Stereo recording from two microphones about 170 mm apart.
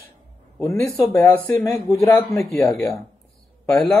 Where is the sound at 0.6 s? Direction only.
15° left (ahead or behind).